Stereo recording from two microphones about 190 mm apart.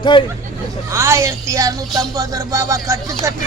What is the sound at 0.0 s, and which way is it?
Speech, 25° left (ahead or behind).